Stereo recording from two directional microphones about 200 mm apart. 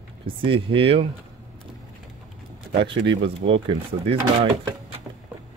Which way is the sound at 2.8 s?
25° right (ahead or behind).